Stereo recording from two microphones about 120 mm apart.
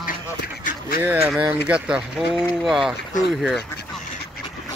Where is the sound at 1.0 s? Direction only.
15° right (ahead or behind).